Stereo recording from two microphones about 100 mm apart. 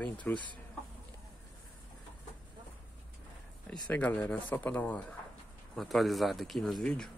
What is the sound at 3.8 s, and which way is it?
Speech, 15° left (ahead or behind).